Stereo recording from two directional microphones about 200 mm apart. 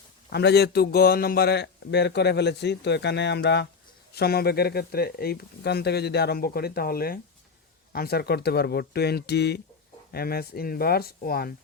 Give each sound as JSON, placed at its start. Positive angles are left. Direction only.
{"t": 0.3, "sound": "a man's voice", "side_deg": 55}